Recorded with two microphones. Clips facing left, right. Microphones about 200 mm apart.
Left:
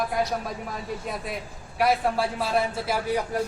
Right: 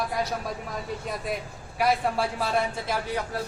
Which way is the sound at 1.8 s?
Centre (ahead or behind).